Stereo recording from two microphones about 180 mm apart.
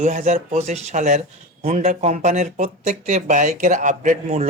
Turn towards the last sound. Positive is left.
turn(degrees=-40)  # may be behind; listen again after turning